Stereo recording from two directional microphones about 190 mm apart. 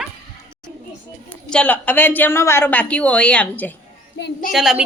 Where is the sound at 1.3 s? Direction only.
5° left (ahead or behind).